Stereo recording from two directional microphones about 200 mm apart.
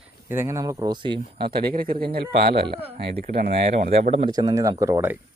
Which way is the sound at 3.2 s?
50° right (ahead or behind).